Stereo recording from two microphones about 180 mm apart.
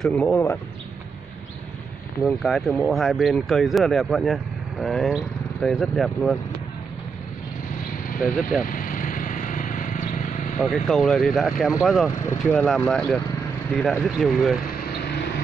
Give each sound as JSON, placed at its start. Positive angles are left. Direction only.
{"t": 0.0, "sound": "speech", "side_deg": 5}
{"t": 2.2, "sound": "speech", "side_deg": 0}
{"t": 8.6, "sound": "vehicle", "side_deg": 50}
{"t": 10.9, "sound": "speech", "side_deg": 0}
{"t": 12.2, "sound": "speech", "side_deg": 15}
{"t": 15.0, "sound": "vehicle", "side_deg": 60}